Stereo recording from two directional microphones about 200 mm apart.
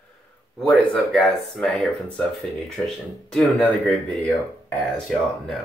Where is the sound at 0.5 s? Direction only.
Centre (ahead or behind).